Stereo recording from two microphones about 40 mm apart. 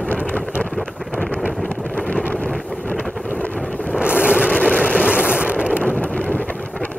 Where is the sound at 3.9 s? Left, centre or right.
Right.